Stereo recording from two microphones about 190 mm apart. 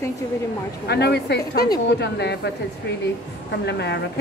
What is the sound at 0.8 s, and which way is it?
A woman's voice, 60° left (ahead or behind).